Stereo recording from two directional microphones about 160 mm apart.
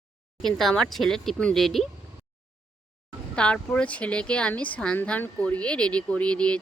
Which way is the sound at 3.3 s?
5° left (ahead or behind).